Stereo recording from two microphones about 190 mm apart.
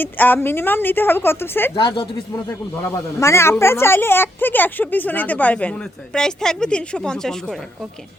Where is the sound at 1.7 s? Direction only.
25° left (ahead or behind).